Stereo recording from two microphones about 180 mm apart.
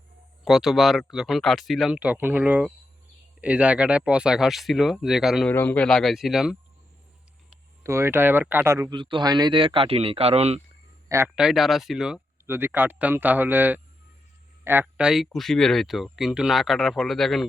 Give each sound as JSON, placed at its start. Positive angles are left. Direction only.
{"t": 0.4, "sound": "speech", "side_deg": 0}
{"t": 5.5, "sound": "speech", "side_deg": 10}
{"t": 7.9, "sound": "speech", "side_deg": -15}
{"t": 11.3, "sound": "speech", "side_deg": -5}